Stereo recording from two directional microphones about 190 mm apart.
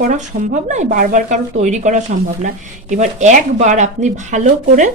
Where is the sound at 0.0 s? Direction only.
40° right (ahead or behind).